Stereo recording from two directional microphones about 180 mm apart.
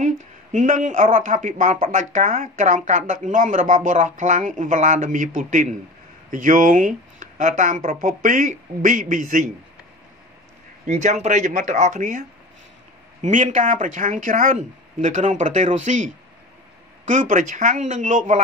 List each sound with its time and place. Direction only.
0.0 s a sound: 45° right (ahead or behind)
1.1 s speech: 45° right (ahead or behind)
10.9 s speech: 40° right (ahead or behind)
17.1 s speech: 45° right (ahead or behind)